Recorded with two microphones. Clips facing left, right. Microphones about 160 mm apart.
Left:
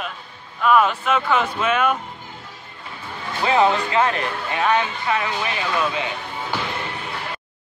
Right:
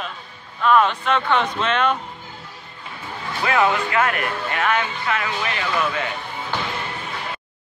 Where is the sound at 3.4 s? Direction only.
30° left (ahead or behind).